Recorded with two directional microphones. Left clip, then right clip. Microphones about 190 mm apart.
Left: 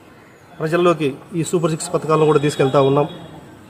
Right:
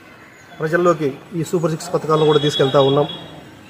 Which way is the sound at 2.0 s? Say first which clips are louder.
Even; 15° left (ahead or behind).